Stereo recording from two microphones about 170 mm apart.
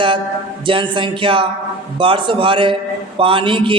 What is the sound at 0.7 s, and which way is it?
A man's voice, 30° right (ahead or behind).